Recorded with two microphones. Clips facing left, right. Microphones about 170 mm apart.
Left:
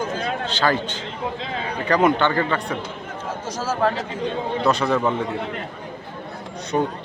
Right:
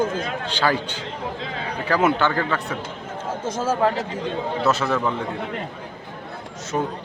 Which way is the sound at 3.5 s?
25° right (ahead or behind).